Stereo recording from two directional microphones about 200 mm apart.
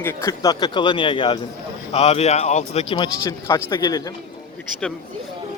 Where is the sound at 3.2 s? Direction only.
15° left (ahead or behind).